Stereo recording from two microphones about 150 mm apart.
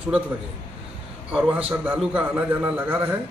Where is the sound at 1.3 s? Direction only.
10° right (ahead or behind).